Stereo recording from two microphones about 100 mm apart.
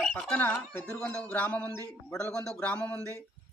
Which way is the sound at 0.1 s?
15° left (ahead or behind).